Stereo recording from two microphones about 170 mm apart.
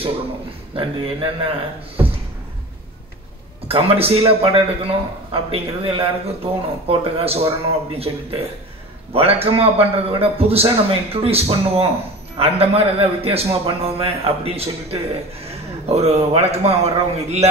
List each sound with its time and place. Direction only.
0.7 s a man's voice: 30° right (ahead or behind)
3.6 s a man's voice: 35° right (ahead or behind)